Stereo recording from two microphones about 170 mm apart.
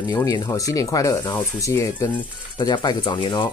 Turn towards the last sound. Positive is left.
turn(degrees=25)  # may be behind; listen again after turning